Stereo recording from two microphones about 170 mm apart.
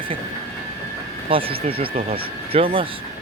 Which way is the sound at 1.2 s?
35° right (ahead or behind).